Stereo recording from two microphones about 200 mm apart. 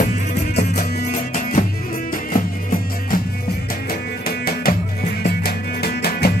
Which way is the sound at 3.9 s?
50° left (ahead or behind).